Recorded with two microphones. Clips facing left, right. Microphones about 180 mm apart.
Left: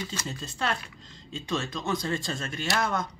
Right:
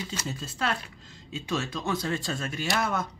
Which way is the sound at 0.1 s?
5° right (ahead or behind).